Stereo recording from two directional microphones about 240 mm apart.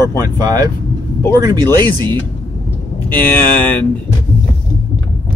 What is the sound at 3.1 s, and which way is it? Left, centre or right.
Speech, centre.